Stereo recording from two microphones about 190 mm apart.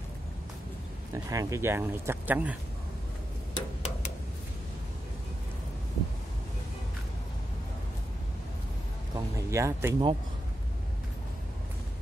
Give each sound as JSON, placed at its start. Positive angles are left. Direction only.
{"t": 1.1, "sound": "speech", "side_deg": -15}
{"t": 3.5, "sound": "tick-tock", "side_deg": 30}
{"t": 9.1, "sound": "a sound", "side_deg": -15}